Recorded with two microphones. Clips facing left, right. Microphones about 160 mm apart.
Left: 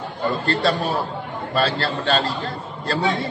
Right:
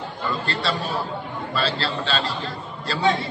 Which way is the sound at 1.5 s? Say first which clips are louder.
Left 4 dB; 55° left (ahead or behind).